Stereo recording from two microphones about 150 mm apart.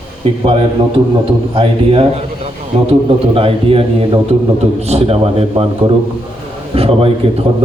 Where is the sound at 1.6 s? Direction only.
40° right (ahead or behind).